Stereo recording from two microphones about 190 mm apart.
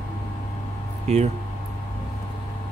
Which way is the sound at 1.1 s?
35° right (ahead or behind).